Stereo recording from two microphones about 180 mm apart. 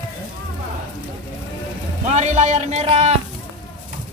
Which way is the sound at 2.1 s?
40° right (ahead or behind).